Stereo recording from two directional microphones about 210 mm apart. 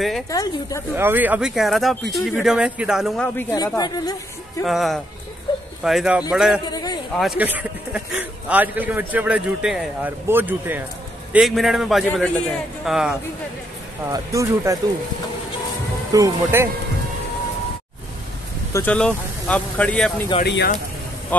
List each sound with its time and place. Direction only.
0.3 s speech: 15° left (ahead or behind)
0.9 s speech: 10° right (ahead or behind)
3.5 s a woman's voice: 20° left (ahead or behind)
4.6 s speech: centre (ahead or behind)
6.7 s a sound: 20° left (ahead or behind)
7.2 s a man's voice: 5° right (ahead or behind)
14.1 s a man's voice: 15° right (ahead or behind)
16.1 s a man's voice: 15° right (ahead or behind)
18.7 s speech: 10° left (ahead or behind)
20.4 s speech: 55° left (ahead or behind)
21.3 s speech: 10° left (ahead or behind)